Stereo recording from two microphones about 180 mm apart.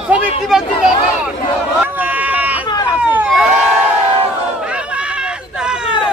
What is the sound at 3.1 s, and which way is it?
Crowd, 5° right (ahead or behind).